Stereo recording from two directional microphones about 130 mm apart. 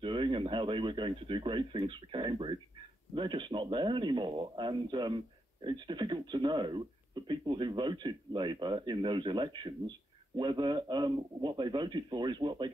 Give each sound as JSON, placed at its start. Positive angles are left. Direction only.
{"t": 0.0, "sound": "speech", "side_deg": -40}